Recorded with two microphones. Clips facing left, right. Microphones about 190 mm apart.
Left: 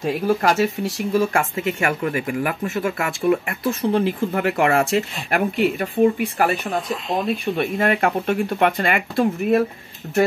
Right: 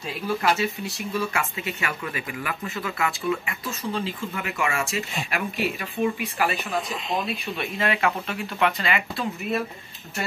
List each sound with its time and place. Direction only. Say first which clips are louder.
0.0 s speech: left 7 dB; 45° left (ahead or behind)